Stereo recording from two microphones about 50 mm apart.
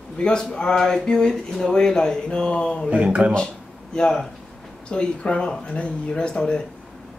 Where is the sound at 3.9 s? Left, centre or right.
Centre.